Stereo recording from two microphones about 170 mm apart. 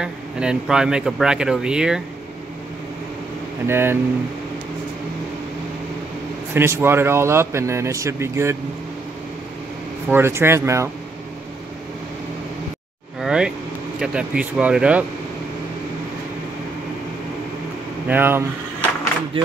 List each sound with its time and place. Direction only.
0.0 s speech: 5° right (ahead or behind)
3.6 s speech: 15° right (ahead or behind)
6.5 s speech: 15° right (ahead or behind)
10.0 s speech: 15° right (ahead or behind)
13.2 s vehicle: 5° right (ahead or behind)
13.9 s speech: 5° right (ahead or behind)
18.0 s speech: 10° right (ahead or behind)
19.3 s speech: 35° right (ahead or behind)